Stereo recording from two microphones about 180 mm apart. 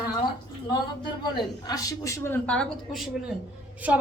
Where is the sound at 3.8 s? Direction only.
10° right (ahead or behind).